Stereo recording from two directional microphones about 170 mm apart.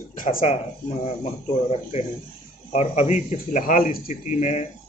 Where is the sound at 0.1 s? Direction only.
55° left (ahead or behind).